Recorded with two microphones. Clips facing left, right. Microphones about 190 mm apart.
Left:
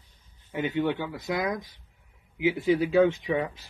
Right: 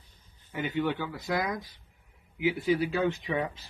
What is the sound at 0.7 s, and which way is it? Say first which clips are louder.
Speech: left 2 dB; 25° left (ahead or behind).